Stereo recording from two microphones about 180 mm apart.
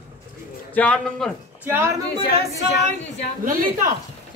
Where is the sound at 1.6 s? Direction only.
15° right (ahead or behind).